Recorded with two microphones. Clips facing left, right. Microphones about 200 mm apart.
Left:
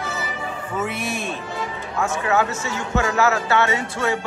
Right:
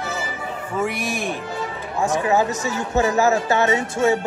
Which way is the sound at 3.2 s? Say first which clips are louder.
Left 1 dB; 20° right (ahead or behind).